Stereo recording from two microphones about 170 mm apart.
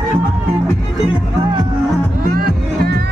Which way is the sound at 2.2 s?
60° right (ahead or behind).